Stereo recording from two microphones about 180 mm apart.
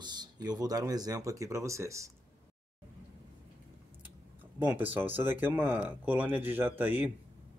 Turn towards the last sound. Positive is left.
turn(degrees=-10)  # may be behind; listen again after turning